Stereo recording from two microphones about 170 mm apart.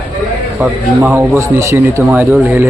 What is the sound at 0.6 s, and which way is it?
Speech, 10° right (ahead or behind).